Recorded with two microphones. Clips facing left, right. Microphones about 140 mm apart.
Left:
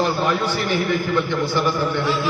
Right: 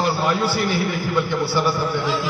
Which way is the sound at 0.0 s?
10° right (ahead or behind).